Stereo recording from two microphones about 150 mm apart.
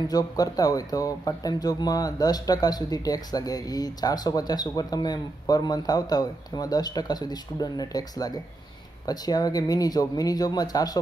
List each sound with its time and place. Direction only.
0.1 s speech: 25° left (ahead or behind)